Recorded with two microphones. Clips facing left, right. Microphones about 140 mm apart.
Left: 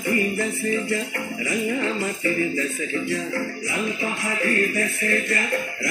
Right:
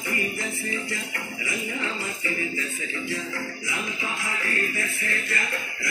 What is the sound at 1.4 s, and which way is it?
Speech, 35° left (ahead or behind).